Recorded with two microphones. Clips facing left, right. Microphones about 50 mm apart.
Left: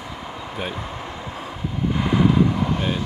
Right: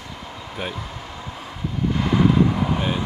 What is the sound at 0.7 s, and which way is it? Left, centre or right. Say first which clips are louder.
Vehicle: left 3 dB; left.